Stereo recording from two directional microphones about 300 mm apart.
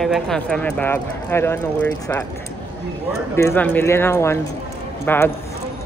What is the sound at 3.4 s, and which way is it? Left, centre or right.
Speech, centre.